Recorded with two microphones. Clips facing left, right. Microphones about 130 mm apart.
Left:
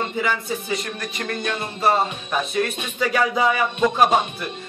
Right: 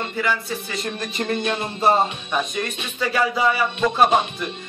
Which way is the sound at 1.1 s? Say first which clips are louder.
Right 4 dB; 25° right (ahead or behind).